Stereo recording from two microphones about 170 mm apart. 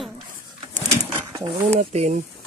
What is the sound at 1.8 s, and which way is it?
Speech, 45° right (ahead or behind).